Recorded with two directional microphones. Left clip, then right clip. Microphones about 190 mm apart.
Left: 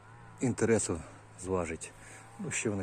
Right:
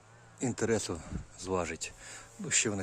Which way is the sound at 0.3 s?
5° right (ahead or behind).